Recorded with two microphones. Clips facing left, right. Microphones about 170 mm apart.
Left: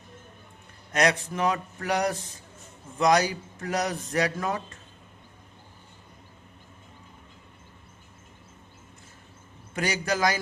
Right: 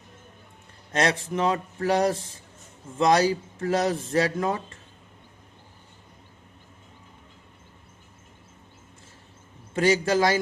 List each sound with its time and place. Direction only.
0.9 s speech: 25° right (ahead or behind)
9.7 s speech: 25° right (ahead or behind)